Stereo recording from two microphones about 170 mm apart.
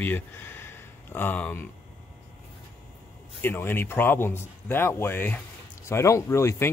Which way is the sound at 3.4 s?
10° left (ahead or behind).